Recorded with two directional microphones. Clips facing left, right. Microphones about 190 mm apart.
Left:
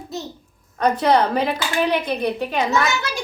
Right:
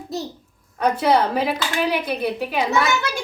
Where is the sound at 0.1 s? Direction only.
35° right (ahead or behind).